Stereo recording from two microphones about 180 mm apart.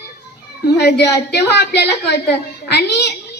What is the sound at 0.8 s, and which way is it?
A woman's voice, 65° left (ahead or behind).